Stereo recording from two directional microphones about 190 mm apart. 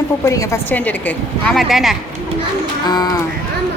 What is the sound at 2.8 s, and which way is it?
Speech, 20° left (ahead or behind).